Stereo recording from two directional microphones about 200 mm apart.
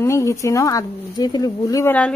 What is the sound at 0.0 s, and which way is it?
A woman's voice, 15° left (ahead or behind).